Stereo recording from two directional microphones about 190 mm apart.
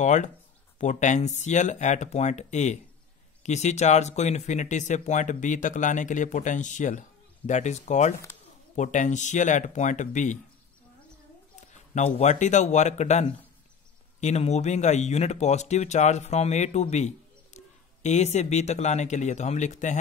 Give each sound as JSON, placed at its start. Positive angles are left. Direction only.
{"t": 0.0, "sound": "speech", "side_deg": 40}
{"t": 11.7, "sound": "speech", "side_deg": 40}